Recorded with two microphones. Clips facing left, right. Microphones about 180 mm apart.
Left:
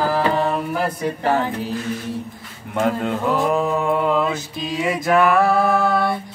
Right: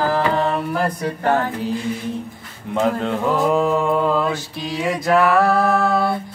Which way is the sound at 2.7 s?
5° left (ahead or behind).